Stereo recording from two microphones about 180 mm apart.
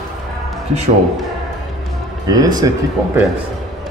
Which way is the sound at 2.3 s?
20° right (ahead or behind).